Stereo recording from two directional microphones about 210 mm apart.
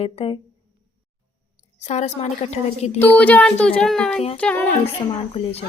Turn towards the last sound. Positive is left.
turn(degrees=30)  # may be behind; listen again after turning